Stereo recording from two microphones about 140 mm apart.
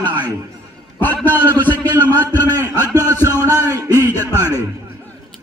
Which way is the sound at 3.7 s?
25° right (ahead or behind).